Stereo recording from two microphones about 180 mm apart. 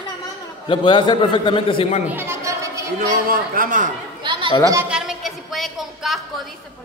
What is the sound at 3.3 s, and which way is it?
Speech, 50° right (ahead or behind).